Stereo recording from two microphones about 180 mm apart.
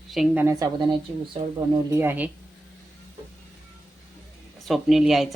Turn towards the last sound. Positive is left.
turn(degrees=0)  # may be behind; listen again after turning